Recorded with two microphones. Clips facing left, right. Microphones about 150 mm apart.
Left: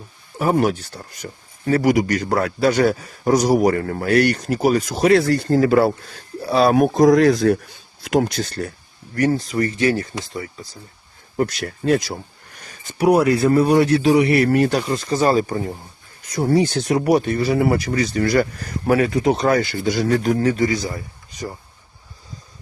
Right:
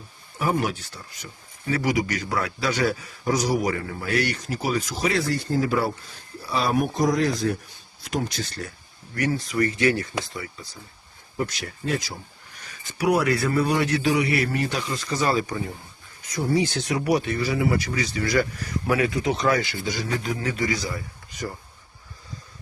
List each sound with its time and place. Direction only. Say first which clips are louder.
0.3 s speech: left 7 dB; 45° left (ahead or behind)
9.1 s speech: left 5 dB; 40° left (ahead or behind)
11.3 s speech: left 7 dB; 55° left (ahead or behind)
13.0 s speech: left 6 dB; 30° left (ahead or behind)
14.1 s speech: left 8 dB; 50° left (ahead or behind)
14.8 s speech: left 7 dB; 35° left (ahead or behind)
16.3 s speech: left 6 dB; 55° left (ahead or behind)
20.4 s speech: left 7 dB; 35° left (ahead or behind)